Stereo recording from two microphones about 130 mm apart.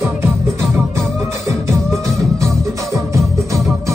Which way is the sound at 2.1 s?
25° right (ahead or behind).